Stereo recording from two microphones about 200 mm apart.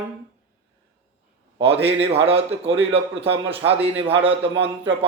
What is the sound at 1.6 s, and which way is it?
A man's voice, 30° right (ahead or behind).